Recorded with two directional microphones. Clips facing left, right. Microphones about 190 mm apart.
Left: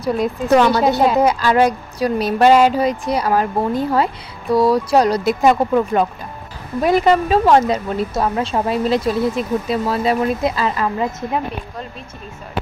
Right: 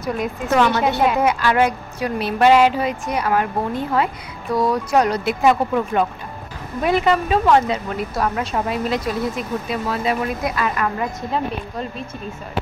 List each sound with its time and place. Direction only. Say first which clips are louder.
0.0 s a woman's voice: left 5 dB; 35° left (ahead or behind)
8.1 s a woman's voice: left 1 dB; 25° left (ahead or behind)